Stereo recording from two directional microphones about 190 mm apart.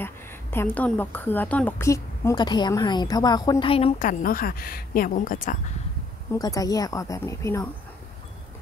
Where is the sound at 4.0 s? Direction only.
45° left (ahead or behind).